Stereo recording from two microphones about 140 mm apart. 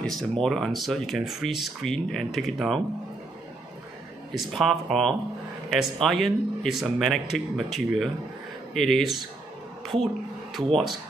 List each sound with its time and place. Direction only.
0.0 s speech: 5° left (ahead or behind)
4.4 s speech: centre (ahead or behind)
10.5 s speech: centre (ahead or behind)